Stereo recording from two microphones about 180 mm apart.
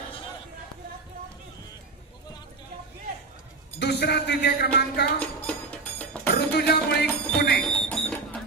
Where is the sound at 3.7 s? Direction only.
70° left (ahead or behind).